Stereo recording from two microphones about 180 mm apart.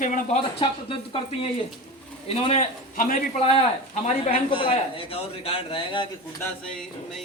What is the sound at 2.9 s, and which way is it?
Speech, 50° left (ahead or behind).